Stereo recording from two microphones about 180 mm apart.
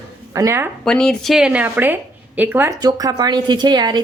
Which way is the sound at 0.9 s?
5° left (ahead or behind).